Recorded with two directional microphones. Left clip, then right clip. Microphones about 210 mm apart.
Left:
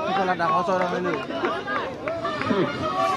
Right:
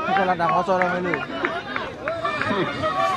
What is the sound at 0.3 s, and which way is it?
Speech, 50° right (ahead or behind).